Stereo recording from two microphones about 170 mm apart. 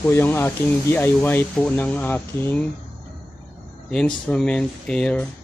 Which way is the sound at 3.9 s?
5° left (ahead or behind).